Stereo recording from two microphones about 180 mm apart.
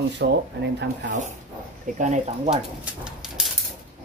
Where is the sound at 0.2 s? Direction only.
75° right (ahead or behind).